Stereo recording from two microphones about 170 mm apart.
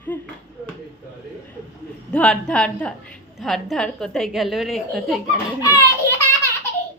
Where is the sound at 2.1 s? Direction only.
5° left (ahead or behind).